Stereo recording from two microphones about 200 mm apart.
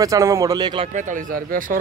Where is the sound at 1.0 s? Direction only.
40° right (ahead or behind).